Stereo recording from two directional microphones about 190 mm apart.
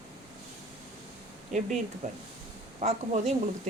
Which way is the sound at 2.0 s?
40° right (ahead or behind).